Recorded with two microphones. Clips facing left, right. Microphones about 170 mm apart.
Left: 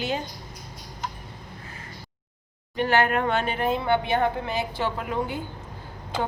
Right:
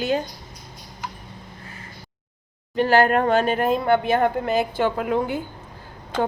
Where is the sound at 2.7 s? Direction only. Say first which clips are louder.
Right 5 dB; 35° right (ahead or behind).